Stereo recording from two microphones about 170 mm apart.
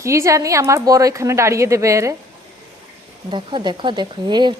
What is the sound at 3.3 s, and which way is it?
Speech, 25° right (ahead or behind).